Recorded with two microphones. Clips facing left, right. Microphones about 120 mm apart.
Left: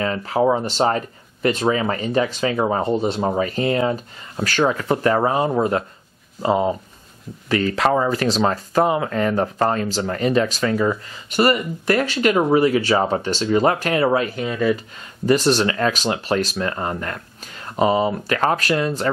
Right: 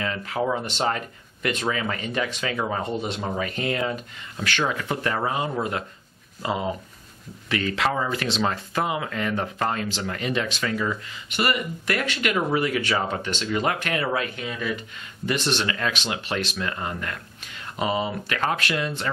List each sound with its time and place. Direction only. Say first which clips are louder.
0.0 s speech: left 7 dB; 35° left (ahead or behind)